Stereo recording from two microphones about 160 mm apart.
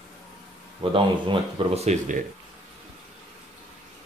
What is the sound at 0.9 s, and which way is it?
Speech, 30° right (ahead or behind).